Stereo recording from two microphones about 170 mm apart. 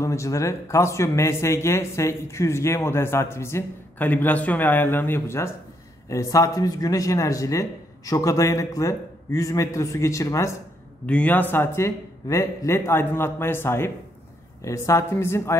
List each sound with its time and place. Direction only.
0.0 s a man's voice: 15° left (ahead or behind)